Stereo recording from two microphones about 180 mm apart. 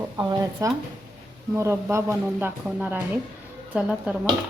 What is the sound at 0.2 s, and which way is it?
A woman's voice, 20° right (ahead or behind).